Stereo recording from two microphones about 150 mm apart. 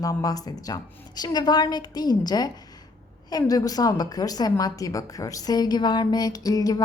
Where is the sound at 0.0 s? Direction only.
25° left (ahead or behind).